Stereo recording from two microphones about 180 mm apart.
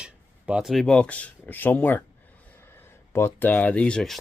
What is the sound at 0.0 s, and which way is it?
Speech, 5° right (ahead or behind).